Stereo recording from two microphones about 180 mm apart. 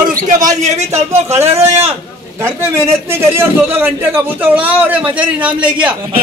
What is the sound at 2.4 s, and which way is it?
A man's voice, 15° right (ahead or behind).